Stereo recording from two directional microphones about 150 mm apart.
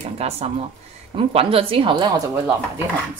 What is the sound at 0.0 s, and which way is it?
A woman's voice, 45° right (ahead or behind).